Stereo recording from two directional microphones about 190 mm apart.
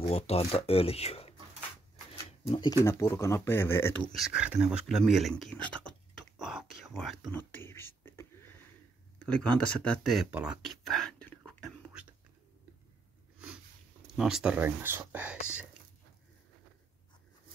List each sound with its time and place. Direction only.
0.0 s speech: 30° left (ahead or behind)
2.4 s speech: 30° left (ahead or behind)
2.8 s speech: 15° left (ahead or behind)
4.1 s speech: 5° right (ahead or behind)
14.1 s speech: 5° right (ahead or behind)